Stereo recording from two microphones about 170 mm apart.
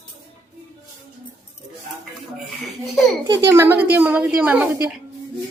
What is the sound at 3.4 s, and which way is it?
A woman's voice, 15° right (ahead or behind).